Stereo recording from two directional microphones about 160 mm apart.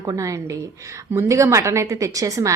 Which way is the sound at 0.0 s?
20° right (ahead or behind).